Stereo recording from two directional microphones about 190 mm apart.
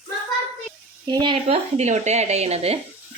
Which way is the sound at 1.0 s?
25° right (ahead or behind).